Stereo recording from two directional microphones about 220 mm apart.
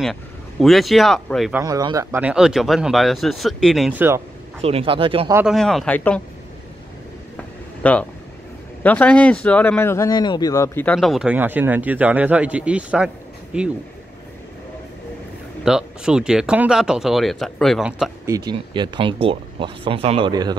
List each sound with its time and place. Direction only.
0.0 s speech: centre (ahead or behind)
1.6 s speech: 15° right (ahead or behind); by 4.1 s centre (ahead or behind)
4.6 s speech: 25° right (ahead or behind)
5.3 s speech: 5° right (ahead or behind)
7.8 s speech: 5° left (ahead or behind)
15.6 s speech: 5° right (ahead or behind)
18.2 s speech: 15° right (ahead or behind)